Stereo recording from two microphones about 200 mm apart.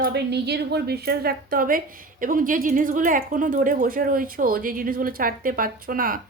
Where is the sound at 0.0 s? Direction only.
55° right (ahead or behind).